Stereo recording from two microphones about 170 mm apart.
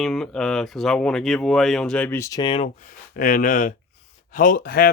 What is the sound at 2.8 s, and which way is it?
Speech, 50° left (ahead or behind).